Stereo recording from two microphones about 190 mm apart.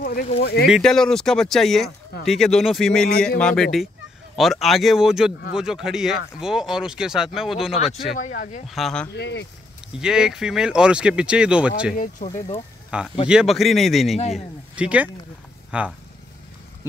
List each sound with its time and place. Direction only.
0.0 s a sound: 50° left (ahead or behind)
0.7 s speech: centre (ahead or behind)
8.2 s speech: 40° left (ahead or behind)
8.6 s speech: centre (ahead or behind)
9.1 s speech: 65° left (ahead or behind)
9.9 s speech: 5° right (ahead or behind)
11.9 s speech: 45° left (ahead or behind)
12.9 s speech: 5° right (ahead or behind)